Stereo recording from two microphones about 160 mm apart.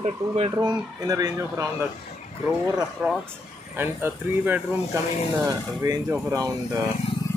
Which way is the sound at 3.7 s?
15° right (ahead or behind).